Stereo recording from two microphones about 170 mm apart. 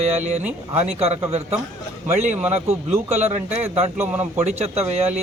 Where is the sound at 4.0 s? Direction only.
10° right (ahead or behind).